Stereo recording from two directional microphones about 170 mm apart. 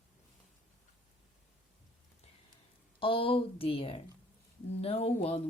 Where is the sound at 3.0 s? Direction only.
30° left (ahead or behind).